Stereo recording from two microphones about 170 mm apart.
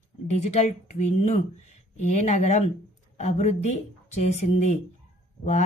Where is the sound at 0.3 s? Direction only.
40° left (ahead or behind).